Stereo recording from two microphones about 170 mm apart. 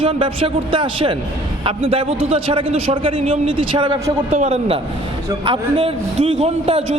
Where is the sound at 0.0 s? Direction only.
30° right (ahead or behind).